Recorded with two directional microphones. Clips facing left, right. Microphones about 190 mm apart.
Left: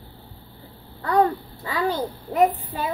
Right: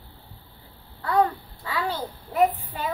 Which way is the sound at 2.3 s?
40° left (ahead or behind).